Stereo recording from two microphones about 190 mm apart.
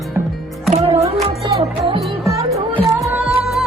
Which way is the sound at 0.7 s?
30° right (ahead or behind).